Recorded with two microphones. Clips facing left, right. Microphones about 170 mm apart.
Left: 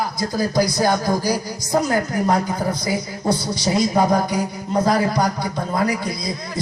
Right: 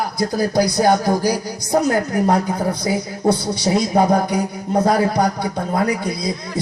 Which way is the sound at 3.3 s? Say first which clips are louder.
Right 3 dB; 60° right (ahead or behind).